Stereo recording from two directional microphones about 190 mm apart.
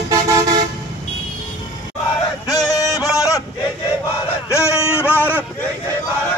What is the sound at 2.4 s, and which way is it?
Music, 20° left (ahead or behind).